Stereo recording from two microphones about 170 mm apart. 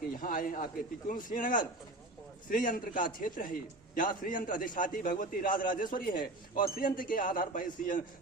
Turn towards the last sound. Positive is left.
turn(degrees=50)  # may be behind; listen again after turning